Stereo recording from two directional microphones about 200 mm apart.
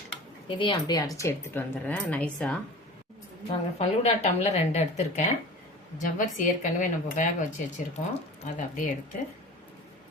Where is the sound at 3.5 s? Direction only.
30° left (ahead or behind).